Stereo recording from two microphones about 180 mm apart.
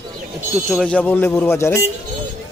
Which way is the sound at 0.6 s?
5° left (ahead or behind).